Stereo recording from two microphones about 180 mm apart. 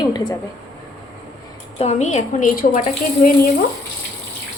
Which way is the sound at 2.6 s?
50° left (ahead or behind).